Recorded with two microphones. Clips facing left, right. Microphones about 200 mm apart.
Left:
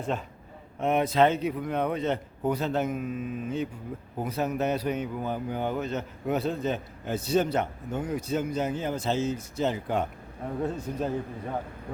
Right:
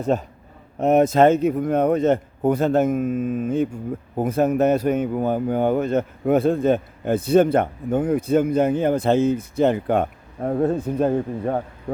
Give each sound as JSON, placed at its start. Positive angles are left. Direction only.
{"t": 0.0, "sound": "a man's voice", "side_deg": -40}